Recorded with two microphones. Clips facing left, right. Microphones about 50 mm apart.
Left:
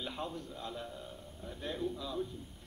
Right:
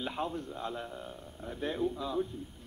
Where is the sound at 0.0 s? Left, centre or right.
Right.